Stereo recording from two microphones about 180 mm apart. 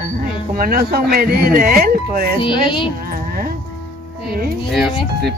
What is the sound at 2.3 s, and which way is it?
Speech, 30° left (ahead or behind).